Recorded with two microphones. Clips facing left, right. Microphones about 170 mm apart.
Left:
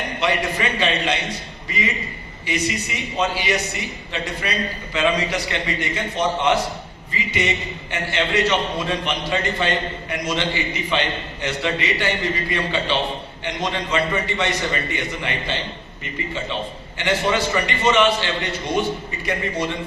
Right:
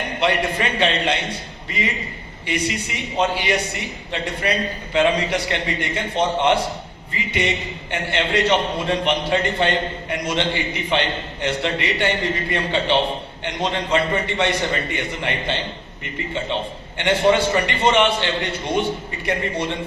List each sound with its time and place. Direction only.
0.2 s a man's voice: 60° right (ahead or behind)
2.6 s a man's voice: 60° right (ahead or behind)
17.0 s a man's voice: 60° right (ahead or behind)